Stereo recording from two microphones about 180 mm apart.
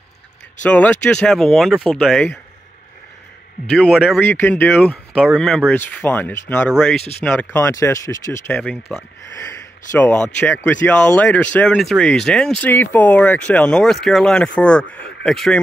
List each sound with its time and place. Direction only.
0.7 s speech: 5° left (ahead or behind)
3.6 s speech: 5° left (ahead or behind)
4.2 s speech: 10° left (ahead or behind)
5.2 s speech: centre (ahead or behind)
5.7 s speech: 10° left (ahead or behind)
8.5 s speech: 5° left (ahead or behind)